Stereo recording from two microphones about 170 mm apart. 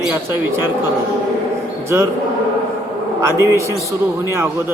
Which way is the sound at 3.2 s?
15° right (ahead or behind).